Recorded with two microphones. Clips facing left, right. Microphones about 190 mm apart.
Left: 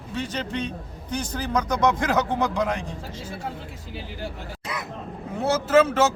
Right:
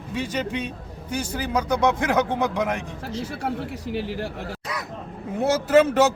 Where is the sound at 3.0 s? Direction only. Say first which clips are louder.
Right 5 dB; 75° right (ahead or behind).